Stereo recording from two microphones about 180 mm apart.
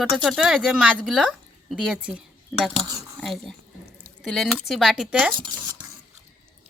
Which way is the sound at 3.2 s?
Centre (ahead or behind).